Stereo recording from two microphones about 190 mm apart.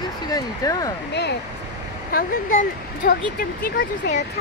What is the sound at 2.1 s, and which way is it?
Speech, 45° left (ahead or behind).